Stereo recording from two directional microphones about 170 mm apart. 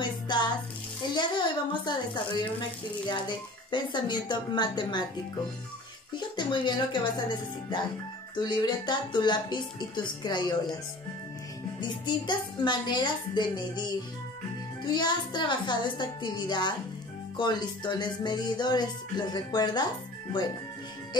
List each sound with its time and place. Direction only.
0.3 s speech: 25° left (ahead or behind)
6.1 s speech: 25° left (ahead or behind)
11.8 s speech: 25° left (ahead or behind)